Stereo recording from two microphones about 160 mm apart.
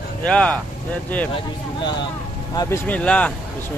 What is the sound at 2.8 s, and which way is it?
Speech, 10° left (ahead or behind).